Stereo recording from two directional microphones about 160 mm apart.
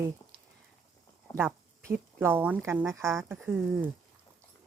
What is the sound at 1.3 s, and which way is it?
Speech, 15° right (ahead or behind).